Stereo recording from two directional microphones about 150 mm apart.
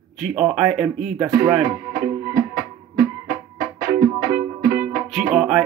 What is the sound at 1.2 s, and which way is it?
Speech, 15° right (ahead or behind).